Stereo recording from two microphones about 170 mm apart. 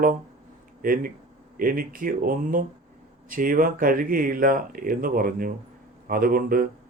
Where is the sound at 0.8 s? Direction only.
55° right (ahead or behind).